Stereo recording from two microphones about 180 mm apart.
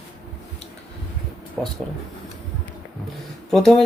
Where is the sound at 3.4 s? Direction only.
5° left (ahead or behind).